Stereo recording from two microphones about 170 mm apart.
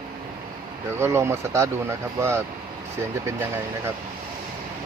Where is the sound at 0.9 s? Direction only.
15° right (ahead or behind).